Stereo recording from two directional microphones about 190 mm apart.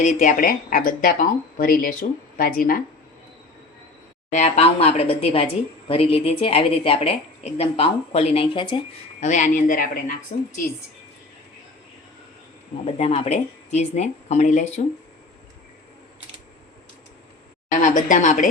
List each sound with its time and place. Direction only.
0.0 s speech: 40° left (ahead or behind)
4.3 s a woman's voice: 35° left (ahead or behind)
9.2 s speech: 40° left (ahead or behind)
12.8 s a woman's voice: 35° left (ahead or behind)
17.7 s a woman's voice: 40° left (ahead or behind)